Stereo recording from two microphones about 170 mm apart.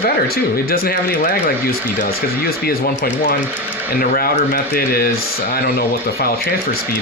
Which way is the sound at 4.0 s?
60° left (ahead or behind).